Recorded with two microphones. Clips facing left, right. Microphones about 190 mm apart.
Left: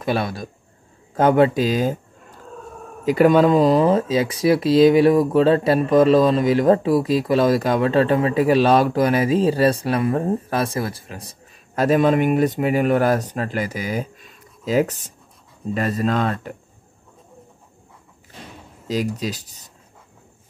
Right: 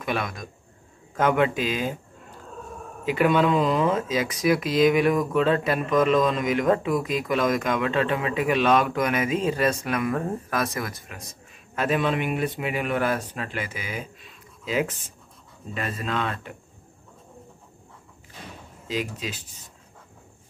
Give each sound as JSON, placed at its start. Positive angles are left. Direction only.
{"t": 0.0, "sound": "speech", "side_deg": 30}
{"t": 3.1, "sound": "speech", "side_deg": 40}
{"t": 18.9, "sound": "speech", "side_deg": 40}